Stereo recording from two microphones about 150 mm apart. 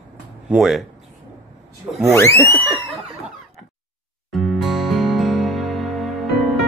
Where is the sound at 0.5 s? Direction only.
Centre (ahead or behind).